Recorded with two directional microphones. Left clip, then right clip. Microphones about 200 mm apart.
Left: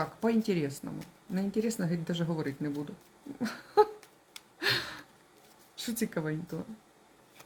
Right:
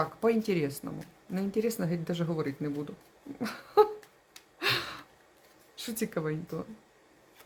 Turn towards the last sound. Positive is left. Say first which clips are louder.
# right 1 dB
turn(degrees=-10)  # may be behind; listen again after turning